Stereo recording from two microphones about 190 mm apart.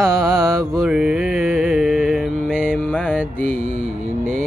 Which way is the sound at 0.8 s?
5° right (ahead or behind).